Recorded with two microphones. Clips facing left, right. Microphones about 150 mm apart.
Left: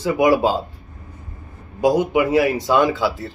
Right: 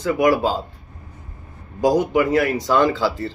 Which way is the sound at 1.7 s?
5° left (ahead or behind).